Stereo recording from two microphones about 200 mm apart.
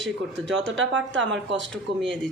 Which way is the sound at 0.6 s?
65° right (ahead or behind).